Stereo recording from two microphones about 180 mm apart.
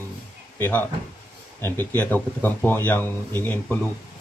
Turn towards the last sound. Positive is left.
turn(degrees=10)  # may be behind; listen again after turning